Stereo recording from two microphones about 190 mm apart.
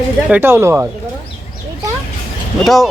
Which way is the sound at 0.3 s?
10° right (ahead or behind).